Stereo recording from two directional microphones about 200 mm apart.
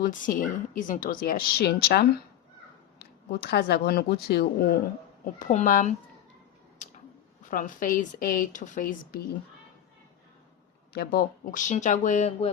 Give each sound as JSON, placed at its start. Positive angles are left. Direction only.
{"t": 0.0, "sound": "speech", "side_deg": 45}
{"t": 5.2, "sound": "speech", "side_deg": 40}
{"t": 7.5, "sound": "speech", "side_deg": 40}
{"t": 10.9, "sound": "speech", "side_deg": 50}